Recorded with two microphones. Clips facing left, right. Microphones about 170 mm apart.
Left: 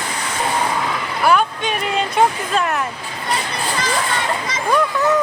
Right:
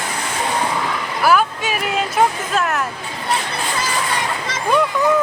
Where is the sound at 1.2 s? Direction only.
5° right (ahead or behind).